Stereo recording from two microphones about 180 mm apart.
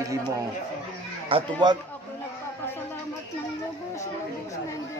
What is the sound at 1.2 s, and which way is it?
Speech, 30° right (ahead or behind).